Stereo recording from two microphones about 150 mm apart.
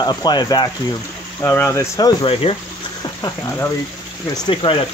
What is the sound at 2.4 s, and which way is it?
Speech, 40° left (ahead or behind).